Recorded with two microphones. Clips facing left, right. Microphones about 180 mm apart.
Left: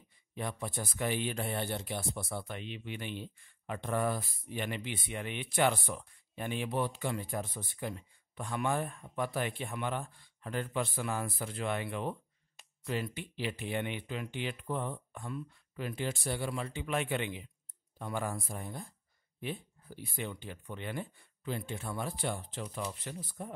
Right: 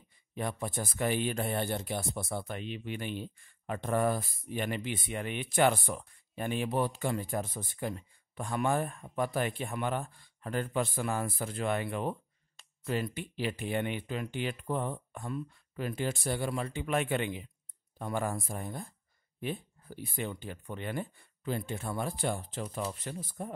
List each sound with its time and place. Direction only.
0.3 s speech: 45° right (ahead or behind)
12.6 s a sound: 15° left (ahead or behind)
12.9 s speech: 45° right (ahead or behind)